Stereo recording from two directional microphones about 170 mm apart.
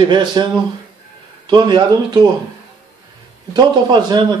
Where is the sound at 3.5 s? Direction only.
25° right (ahead or behind).